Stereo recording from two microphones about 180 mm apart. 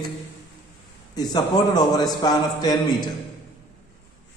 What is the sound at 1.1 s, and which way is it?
A man's voice, 25° left (ahead or behind).